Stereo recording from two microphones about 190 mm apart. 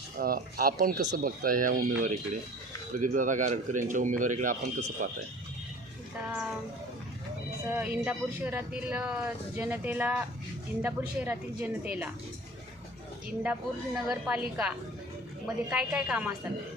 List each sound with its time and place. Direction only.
0.2 s speech: 50° right (ahead or behind)
7.7 s speech: 10° right (ahead or behind)
13.4 s speech: 10° right (ahead or behind)
15.7 s speech: 5° right (ahead or behind)